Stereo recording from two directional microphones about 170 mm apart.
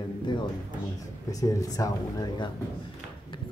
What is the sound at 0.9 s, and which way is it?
Speech, 20° left (ahead or behind).